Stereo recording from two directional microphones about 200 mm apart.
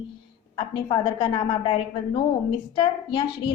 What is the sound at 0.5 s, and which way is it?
A woman's voice, 25° left (ahead or behind).